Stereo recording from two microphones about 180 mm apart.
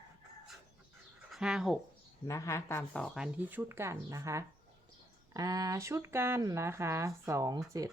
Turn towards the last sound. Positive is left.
turn(degrees=-20)  # may be behind; listen again after turning